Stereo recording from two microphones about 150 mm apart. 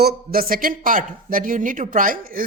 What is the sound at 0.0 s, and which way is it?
Speech, 90° right.